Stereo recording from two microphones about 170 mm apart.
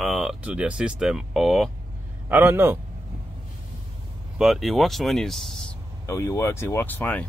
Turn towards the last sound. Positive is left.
turn(degrees=10)  # may be behind; listen again after turning